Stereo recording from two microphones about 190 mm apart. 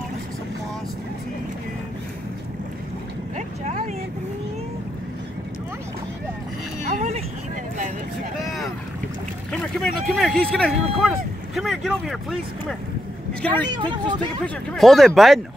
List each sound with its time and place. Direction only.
3.3 s vehicle: 40° right (ahead or behind)
6.9 s vehicle: 35° right (ahead or behind)
8.4 s boat: centre (ahead or behind)
10.0 s speech: centre (ahead or behind)
13.5 s speech: 25° right (ahead or behind)
14.4 s speech: 5° left (ahead or behind)